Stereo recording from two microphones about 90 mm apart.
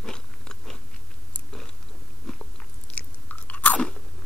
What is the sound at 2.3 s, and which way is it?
Biting, 5° left (ahead or behind).